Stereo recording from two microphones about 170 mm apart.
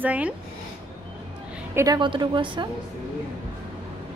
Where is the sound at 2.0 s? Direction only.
30° right (ahead or behind).